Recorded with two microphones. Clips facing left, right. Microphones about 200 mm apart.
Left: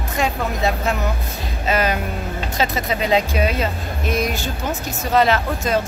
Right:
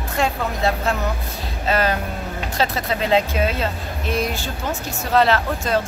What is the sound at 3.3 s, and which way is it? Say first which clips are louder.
Speech: left 1 dB; 15° left (ahead or behind).